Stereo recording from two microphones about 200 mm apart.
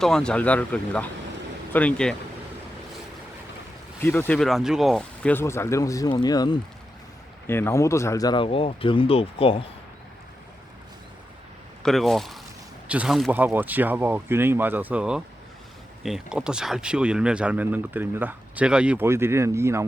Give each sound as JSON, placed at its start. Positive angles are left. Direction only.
{"t": 0.0, "sound": "speech", "side_deg": 5}
{"t": 4.0, "sound": "speech", "side_deg": 10}
{"t": 11.8, "sound": "speech", "side_deg": 0}